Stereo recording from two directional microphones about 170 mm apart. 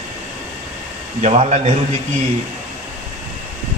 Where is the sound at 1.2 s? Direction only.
40° right (ahead or behind).